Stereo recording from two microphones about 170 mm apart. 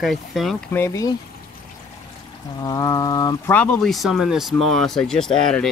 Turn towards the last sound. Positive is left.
turn(degrees=5)  # may be behind; listen again after turning